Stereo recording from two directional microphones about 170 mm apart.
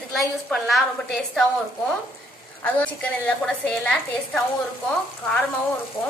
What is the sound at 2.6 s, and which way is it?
A woman's voice, 10° left (ahead or behind).